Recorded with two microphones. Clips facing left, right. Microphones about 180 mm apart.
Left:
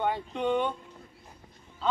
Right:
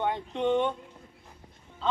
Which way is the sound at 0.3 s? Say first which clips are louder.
Right 4 dB; 25° right (ahead or behind).